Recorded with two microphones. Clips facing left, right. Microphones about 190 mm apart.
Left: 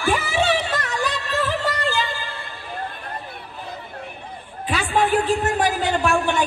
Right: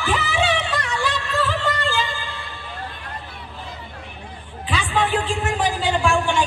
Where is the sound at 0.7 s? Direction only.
40° left (ahead or behind).